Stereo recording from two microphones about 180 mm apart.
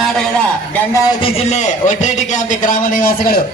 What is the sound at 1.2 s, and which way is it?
A man's voice, 30° left (ahead or behind).